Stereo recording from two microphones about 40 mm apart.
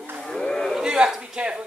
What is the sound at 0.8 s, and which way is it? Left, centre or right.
Speech, centre.